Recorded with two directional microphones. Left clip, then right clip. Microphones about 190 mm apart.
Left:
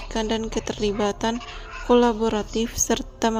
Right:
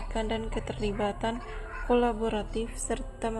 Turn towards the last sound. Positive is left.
turn(degrees=45)  # may be behind; listen again after turning